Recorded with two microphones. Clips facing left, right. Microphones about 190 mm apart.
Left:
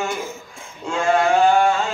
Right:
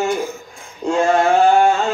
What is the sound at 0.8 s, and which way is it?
Male singing, 40° right (ahead or behind).